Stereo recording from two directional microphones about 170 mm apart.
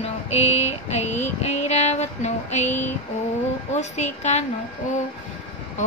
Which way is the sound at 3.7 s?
40° left (ahead or behind).